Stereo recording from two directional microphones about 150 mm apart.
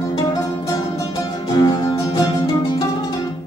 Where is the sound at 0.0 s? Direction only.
25° left (ahead or behind).